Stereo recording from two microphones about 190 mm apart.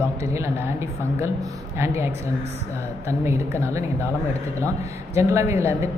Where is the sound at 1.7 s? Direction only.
15° right (ahead or behind).